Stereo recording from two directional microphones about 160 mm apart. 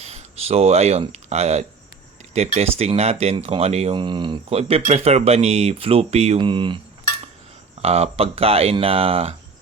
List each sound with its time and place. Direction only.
0.0 s speech: 40° right (ahead or behind)
7.8 s speech: 40° right (ahead or behind)